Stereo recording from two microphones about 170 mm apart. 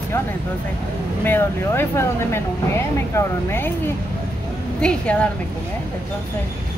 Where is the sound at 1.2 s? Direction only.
10° left (ahead or behind).